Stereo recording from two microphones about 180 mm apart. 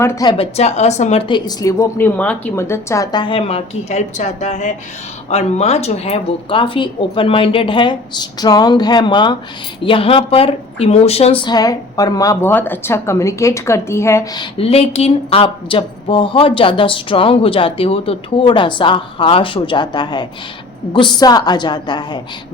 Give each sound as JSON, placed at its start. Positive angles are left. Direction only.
{"t": 0.0, "sound": "speech", "side_deg": 15}
{"t": 1.5, "sound": "a woman's voice", "side_deg": 15}
{"t": 14.6, "sound": "a woman's voice", "side_deg": 35}